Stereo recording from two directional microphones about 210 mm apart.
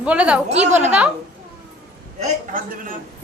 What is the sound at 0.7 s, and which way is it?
Speech, 35° right (ahead or behind).